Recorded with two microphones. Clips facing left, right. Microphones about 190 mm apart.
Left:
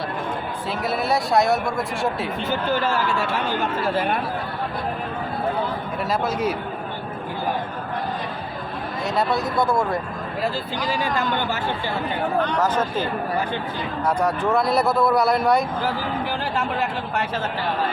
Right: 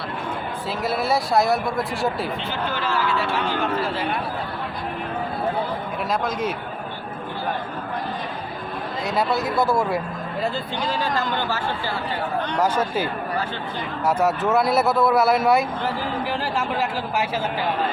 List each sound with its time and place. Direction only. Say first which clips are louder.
0.9 s speech: even; centre (ahead or behind)
2.5 s speech: left 4 dB; 45° left (ahead or behind)
6.1 s speech: left 2 dB; 10° left (ahead or behind)
9.0 s speech: even; centre (ahead or behind)
10.4 s speech: even; 10° left (ahead or behind)
12.5 s speech: even; 10° right (ahead or behind)